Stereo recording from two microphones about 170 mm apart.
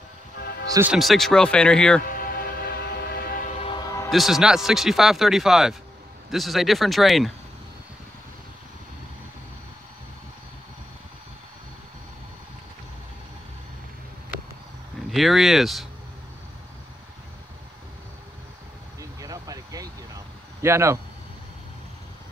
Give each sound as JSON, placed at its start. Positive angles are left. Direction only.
{"t": 0.7, "sound": "speech", "side_deg": -15}
{"t": 0.9, "sound": "a man's voice", "side_deg": 0}
{"t": 2.0, "sound": "music", "side_deg": 60}
{"t": 4.1, "sound": "a man's voice", "side_deg": 0}
{"t": 15.0, "sound": "a man's voice", "side_deg": 0}
{"t": 18.9, "sound": "vehicle", "side_deg": -20}
{"t": 20.6, "sound": "speech", "side_deg": -15}